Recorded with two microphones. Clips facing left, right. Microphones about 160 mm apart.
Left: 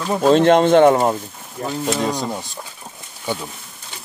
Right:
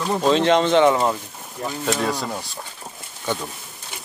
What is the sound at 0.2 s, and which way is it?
Speech, 50° left (ahead or behind).